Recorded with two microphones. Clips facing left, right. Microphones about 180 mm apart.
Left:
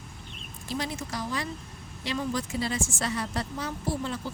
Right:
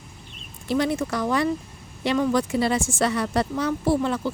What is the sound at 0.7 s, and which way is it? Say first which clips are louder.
Speech: right 10 dB; 60° right (ahead or behind).